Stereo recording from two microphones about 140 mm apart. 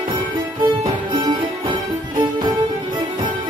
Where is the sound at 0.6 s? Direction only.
35° right (ahead or behind).